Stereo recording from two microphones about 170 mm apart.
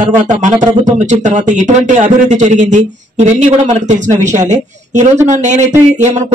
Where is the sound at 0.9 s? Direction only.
45° right (ahead or behind).